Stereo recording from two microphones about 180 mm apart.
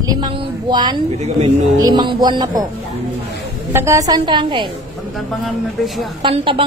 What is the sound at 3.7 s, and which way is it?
Speech, 15° right (ahead or behind).